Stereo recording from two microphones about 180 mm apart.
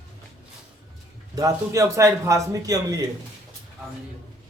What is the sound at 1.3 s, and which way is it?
A man's voice, 20° right (ahead or behind).